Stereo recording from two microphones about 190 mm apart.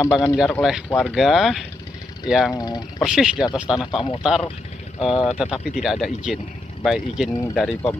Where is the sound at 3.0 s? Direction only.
5° right (ahead or behind).